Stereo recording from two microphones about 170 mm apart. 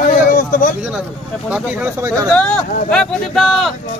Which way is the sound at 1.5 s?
10° right (ahead or behind).